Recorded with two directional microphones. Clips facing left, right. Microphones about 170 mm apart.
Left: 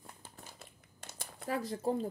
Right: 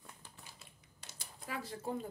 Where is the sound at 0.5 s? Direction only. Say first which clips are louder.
Left 6 dB; 50° left (ahead or behind).